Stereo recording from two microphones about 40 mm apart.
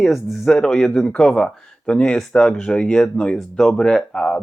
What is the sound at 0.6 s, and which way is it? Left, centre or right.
Speech, centre.